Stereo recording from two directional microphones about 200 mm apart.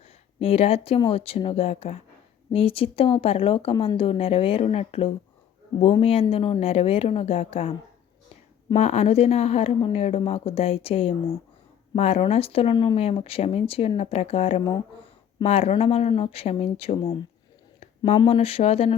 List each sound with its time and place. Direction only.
0.3 s speech: 30° left (ahead or behind)
8.7 s a woman's voice: 30° left (ahead or behind)